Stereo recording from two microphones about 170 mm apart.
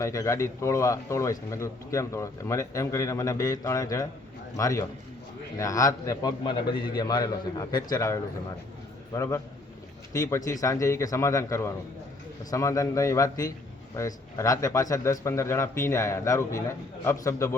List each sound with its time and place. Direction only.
0.0 s a man's voice: 15° left (ahead or behind)